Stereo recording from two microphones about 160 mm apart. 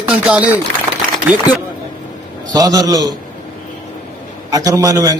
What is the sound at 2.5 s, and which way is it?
Speech, 25° right (ahead or behind).